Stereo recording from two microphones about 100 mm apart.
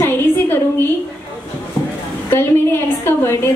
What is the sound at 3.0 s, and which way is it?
Speech, 25° left (ahead or behind).